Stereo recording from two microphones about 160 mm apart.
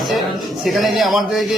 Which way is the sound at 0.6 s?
Centre (ahead or behind).